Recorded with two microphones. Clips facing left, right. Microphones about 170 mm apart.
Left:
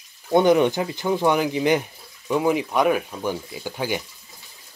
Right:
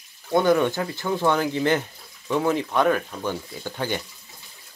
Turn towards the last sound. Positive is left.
turn(degrees=10)  # may be behind; listen again after turning